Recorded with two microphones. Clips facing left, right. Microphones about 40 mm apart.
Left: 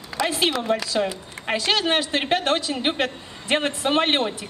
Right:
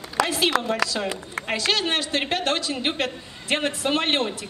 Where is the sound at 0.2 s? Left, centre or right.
Right.